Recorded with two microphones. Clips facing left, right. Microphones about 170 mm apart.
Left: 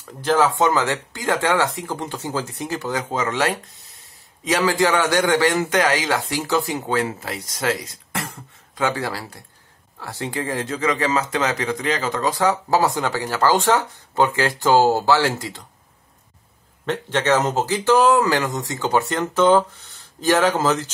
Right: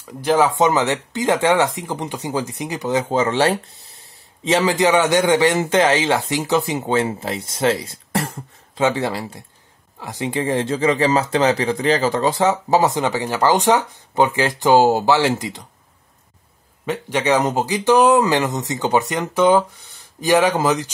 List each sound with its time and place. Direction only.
0.2 s speech: 15° right (ahead or behind)
16.8 s speech: 10° right (ahead or behind)